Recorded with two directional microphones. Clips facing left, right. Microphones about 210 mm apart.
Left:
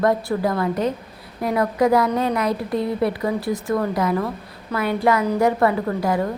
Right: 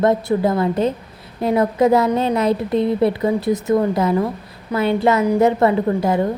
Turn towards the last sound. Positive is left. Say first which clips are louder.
# right 4 dB
turn(degrees=-25)  # may be behind; listen again after turning